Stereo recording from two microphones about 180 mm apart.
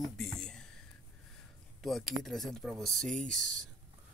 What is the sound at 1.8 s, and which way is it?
Speech, centre (ahead or behind).